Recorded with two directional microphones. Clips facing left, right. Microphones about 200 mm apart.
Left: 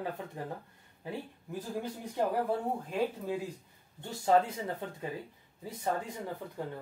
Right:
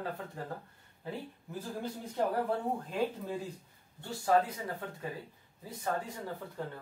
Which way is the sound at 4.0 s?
25° left (ahead or behind).